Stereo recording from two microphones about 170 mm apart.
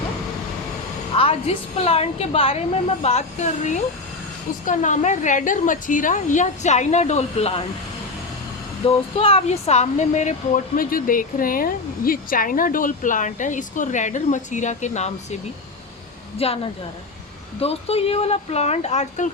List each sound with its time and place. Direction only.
1.1 s speech: 35° left (ahead or behind)
9.1 s speech: 35° left (ahead or behind)
16.4 s speech: 35° left (ahead or behind)